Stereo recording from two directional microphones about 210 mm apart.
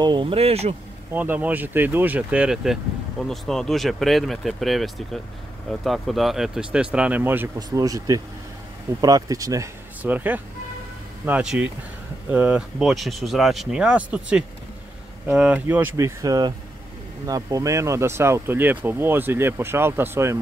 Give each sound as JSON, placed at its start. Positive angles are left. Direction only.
{"t": 0.0, "sound": "speech", "side_deg": -20}
{"t": 1.1, "sound": "speech", "side_deg": -10}